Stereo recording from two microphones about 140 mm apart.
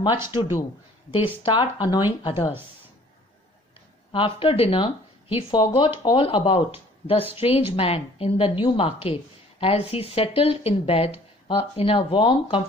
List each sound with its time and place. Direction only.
0.1 s speech: 15° right (ahead or behind)
1.1 s speech: 40° left (ahead or behind)
4.1 s speech: 40° left (ahead or behind)